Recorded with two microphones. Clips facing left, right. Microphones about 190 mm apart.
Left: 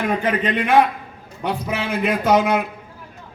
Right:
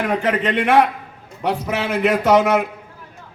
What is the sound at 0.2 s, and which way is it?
A man's voice, 75° right (ahead or behind).